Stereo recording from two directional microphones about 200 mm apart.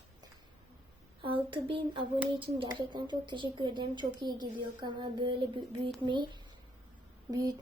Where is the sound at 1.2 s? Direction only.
25° right (ahead or behind).